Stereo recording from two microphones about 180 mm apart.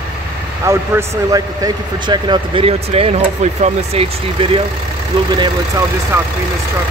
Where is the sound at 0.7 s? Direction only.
15° right (ahead or behind).